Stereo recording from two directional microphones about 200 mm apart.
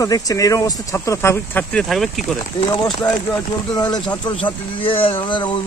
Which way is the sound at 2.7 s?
20° left (ahead or behind).